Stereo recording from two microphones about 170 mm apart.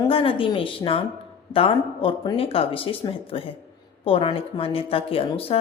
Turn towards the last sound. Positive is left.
turn(degrees=35)  # may be behind; listen again after turning